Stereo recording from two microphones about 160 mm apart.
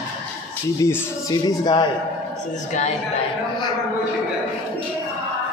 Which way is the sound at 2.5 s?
45° left (ahead or behind).